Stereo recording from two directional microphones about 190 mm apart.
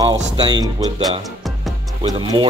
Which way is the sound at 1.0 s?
Centre (ahead or behind).